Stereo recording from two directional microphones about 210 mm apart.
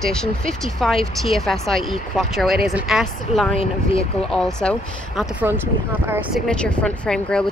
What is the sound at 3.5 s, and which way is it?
Speech, 30° left (ahead or behind).